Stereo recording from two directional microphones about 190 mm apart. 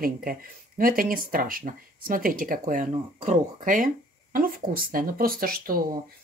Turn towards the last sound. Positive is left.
turn(degrees=-50)  # may be behind; listen again after turning